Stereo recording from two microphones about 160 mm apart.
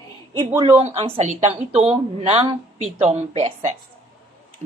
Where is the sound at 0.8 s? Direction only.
40° right (ahead or behind).